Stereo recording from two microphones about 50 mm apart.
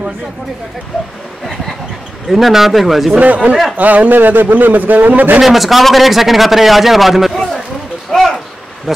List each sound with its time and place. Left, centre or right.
2.2 s a man's voice: centre
3.2 s a man's voice: right
5.4 s a man's voice: centre